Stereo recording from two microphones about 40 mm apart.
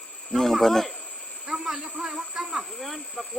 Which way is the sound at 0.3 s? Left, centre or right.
Centre.